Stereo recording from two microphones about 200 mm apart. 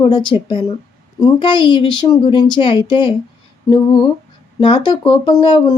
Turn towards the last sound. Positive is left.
turn(degrees=20)  # may be behind; listen again after turning